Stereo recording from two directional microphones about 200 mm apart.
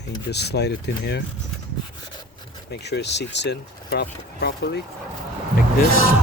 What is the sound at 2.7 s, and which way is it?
Speech, 55° left (ahead or behind).